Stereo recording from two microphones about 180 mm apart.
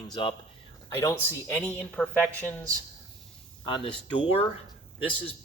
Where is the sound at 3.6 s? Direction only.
30° left (ahead or behind).